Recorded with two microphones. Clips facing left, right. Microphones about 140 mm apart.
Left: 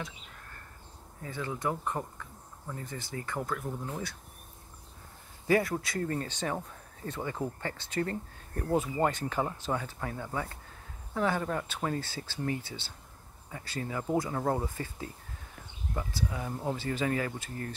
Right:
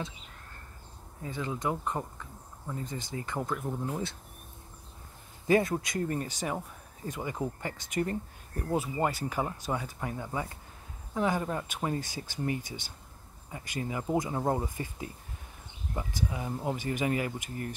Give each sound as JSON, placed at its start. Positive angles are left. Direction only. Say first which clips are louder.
{"t": 1.2, "sound": "speech", "louder": "right 1 dB", "side_deg": -20}
{"t": 5.5, "sound": "speech", "louder": "right 2 dB", "side_deg": -20}